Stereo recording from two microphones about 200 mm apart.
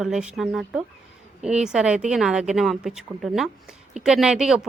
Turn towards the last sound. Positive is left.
turn(degrees=-5)  # may be behind; listen again after turning